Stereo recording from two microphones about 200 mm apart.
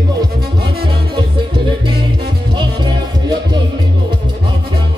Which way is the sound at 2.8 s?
20° right (ahead or behind).